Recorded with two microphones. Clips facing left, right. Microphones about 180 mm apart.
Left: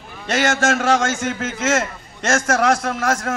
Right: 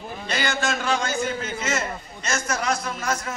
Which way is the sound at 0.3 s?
80° left.